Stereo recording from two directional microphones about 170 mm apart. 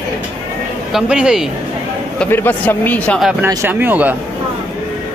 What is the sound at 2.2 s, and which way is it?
Speech, 10° left (ahead or behind).